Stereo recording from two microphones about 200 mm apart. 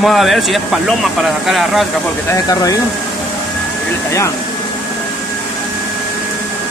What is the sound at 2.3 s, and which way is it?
Speech, 15° left (ahead or behind).